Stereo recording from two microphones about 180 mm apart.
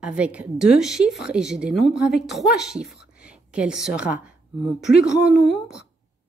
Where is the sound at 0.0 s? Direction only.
5° right (ahead or behind).